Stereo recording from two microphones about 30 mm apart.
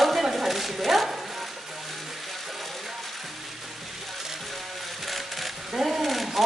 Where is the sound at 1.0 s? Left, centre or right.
Centre.